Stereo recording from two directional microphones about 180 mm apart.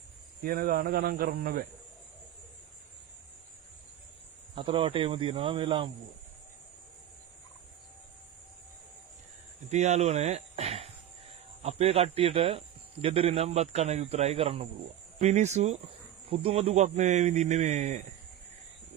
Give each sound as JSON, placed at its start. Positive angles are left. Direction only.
{"t": 0.4, "sound": "speech", "side_deg": -50}
{"t": 4.6, "sound": "speech", "side_deg": -30}
{"t": 9.7, "sound": "a man's voice", "side_deg": -40}